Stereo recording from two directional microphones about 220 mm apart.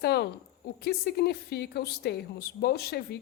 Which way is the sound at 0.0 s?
45° left (ahead or behind).